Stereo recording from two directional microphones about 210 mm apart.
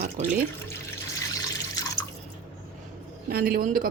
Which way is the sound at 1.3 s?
15° left (ahead or behind).